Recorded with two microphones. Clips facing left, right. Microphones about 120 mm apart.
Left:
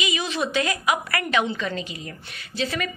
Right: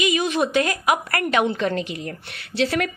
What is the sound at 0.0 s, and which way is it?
A woman's voice, 50° right (ahead or behind).